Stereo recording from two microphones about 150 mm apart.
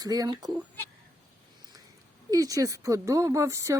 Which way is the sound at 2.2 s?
25° right (ahead or behind).